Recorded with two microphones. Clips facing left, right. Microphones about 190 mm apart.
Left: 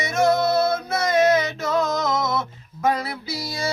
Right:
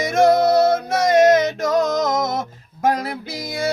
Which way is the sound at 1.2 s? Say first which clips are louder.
Right 3 dB; 45° right (ahead or behind).